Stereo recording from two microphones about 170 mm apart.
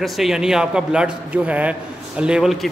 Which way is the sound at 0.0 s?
Centre (ahead or behind).